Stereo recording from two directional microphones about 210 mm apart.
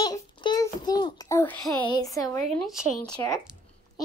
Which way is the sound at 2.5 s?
5° right (ahead or behind).